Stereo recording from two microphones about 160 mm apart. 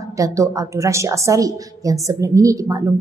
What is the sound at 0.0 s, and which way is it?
A woman's voice, 20° right (ahead or behind).